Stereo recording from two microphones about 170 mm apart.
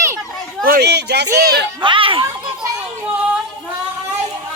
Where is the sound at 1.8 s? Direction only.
30° right (ahead or behind).